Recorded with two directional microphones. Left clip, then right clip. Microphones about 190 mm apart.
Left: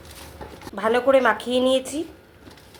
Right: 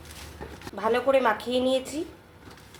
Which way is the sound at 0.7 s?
25° left (ahead or behind).